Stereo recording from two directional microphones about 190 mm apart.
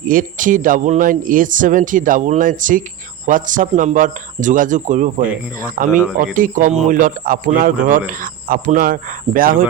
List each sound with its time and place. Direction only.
0.1 s a man's voice: 45° right (ahead or behind)